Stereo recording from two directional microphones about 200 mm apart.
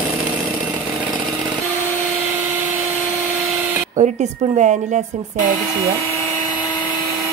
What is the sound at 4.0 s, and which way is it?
Speech, 35° right (ahead or behind).